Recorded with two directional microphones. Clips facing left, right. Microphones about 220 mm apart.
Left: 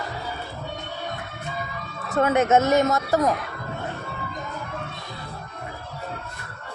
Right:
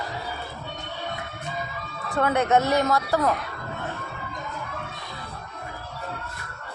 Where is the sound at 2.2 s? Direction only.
20° left (ahead or behind).